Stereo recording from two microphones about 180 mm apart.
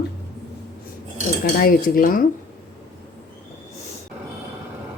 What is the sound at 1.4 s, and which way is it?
Cutlery, 55° left (ahead or behind).